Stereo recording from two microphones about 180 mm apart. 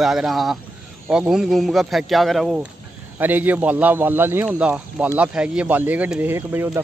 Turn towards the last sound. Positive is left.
turn(degrees=-10)  # may be behind; listen again after turning